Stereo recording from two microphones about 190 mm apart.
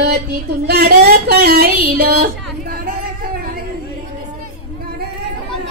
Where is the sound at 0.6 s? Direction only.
60° right (ahead or behind).